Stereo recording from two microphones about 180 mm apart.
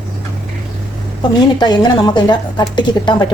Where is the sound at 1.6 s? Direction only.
25° left (ahead or behind).